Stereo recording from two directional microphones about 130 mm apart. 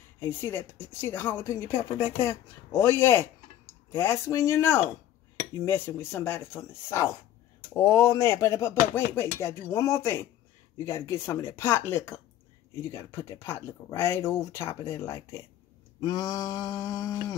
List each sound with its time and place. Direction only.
0.2 s speech: 20° left (ahead or behind)